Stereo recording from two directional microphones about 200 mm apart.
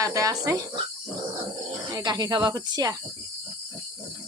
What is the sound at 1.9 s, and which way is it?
Speech, 20° right (ahead or behind).